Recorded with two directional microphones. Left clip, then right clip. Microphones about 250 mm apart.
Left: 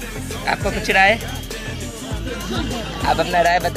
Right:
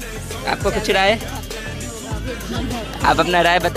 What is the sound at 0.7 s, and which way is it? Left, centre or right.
Speech, right.